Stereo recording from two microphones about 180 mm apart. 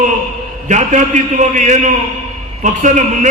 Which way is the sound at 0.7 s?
40° right (ahead or behind).